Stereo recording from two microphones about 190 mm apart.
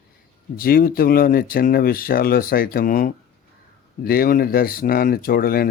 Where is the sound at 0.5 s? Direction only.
50° left (ahead or behind).